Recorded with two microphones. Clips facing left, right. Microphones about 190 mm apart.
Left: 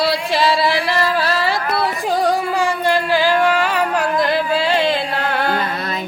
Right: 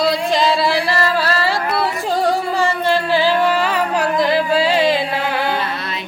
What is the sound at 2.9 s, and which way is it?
Music, 10° left (ahead or behind).